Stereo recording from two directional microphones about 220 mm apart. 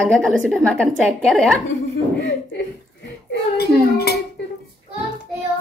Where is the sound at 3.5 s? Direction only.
45° left (ahead or behind).